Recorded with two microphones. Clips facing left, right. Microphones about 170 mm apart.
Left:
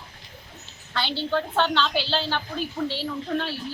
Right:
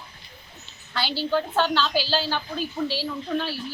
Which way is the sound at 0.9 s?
20° left (ahead or behind).